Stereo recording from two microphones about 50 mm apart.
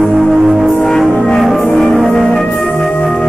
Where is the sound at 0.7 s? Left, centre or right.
Centre.